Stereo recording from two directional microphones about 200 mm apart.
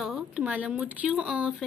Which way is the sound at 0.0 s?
5° right (ahead or behind).